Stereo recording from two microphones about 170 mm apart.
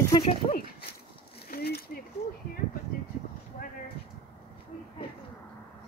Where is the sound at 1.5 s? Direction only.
70° left (ahead or behind).